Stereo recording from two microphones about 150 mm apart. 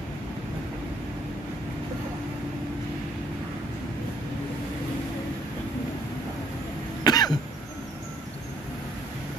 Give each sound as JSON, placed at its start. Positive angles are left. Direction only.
{"t": 7.0, "sound": "cough", "side_deg": 25}